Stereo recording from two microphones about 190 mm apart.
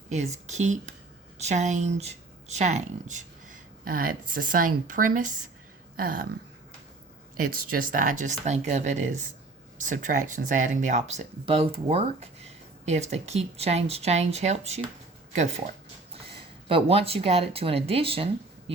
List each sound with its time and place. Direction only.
0.1 s speech: 35° right (ahead or behind)
6.0 s a sound: 50° right (ahead or behind)
7.5 s speech: 50° right (ahead or behind)
16.2 s speech: 30° right (ahead or behind)